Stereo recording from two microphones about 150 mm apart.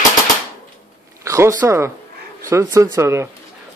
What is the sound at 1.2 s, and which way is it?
Speech, 20° right (ahead or behind).